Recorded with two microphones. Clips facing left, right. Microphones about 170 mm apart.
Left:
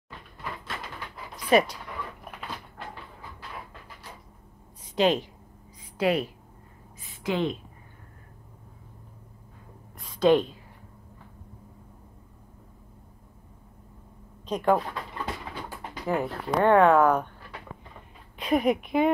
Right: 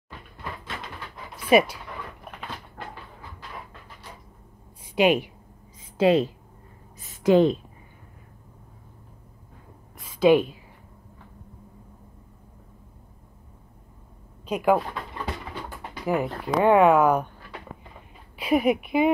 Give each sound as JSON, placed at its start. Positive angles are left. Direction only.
{"t": 1.3, "sound": "dog", "side_deg": -10}
{"t": 4.9, "sound": "a woman's voice", "side_deg": -10}
{"t": 5.9, "sound": "a woman's voice", "side_deg": -25}
{"t": 7.0, "sound": "a sound", "side_deg": -40}
{"t": 9.9, "sound": "a sound", "side_deg": -5}
{"t": 14.4, "sound": "speech", "side_deg": -10}
{"t": 16.1, "sound": "speech", "side_deg": -10}
{"t": 18.4, "sound": "speech", "side_deg": -5}